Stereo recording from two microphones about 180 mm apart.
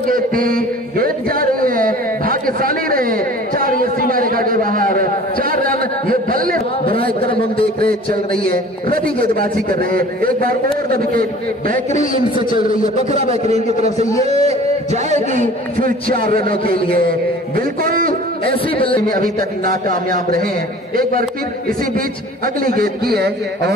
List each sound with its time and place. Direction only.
0.0 s a sound: 50° right (ahead or behind)
6.8 s a man's voice: 30° left (ahead or behind)
7.8 s a man's voice: 55° right (ahead or behind)
12.4 s a man's voice: 50° left (ahead or behind)
13.1 s a man's voice: 35° right (ahead or behind); by 18.6 s 55° right (ahead or behind)
18.8 s speech: 30° left (ahead or behind)
19.1 s a man's voice: 50° right (ahead or behind)
22.8 s a man's voice: 60° right (ahead or behind)